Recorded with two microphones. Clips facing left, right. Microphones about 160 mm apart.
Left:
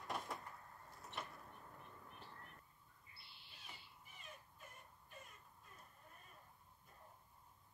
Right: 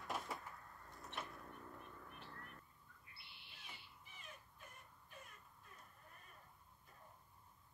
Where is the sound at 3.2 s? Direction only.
65° right (ahead or behind).